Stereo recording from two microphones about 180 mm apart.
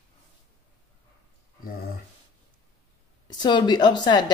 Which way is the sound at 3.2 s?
25° left (ahead or behind).